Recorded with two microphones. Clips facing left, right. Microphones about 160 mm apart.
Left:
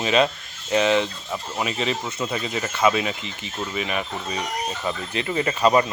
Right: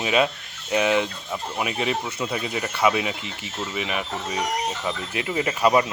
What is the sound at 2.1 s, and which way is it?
Speech, 10° right (ahead or behind).